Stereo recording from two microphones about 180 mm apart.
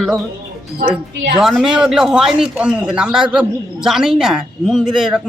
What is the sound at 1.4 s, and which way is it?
A man's voice, 5° right (ahead or behind).